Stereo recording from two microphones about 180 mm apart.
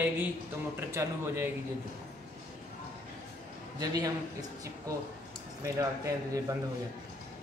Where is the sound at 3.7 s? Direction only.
20° right (ahead or behind).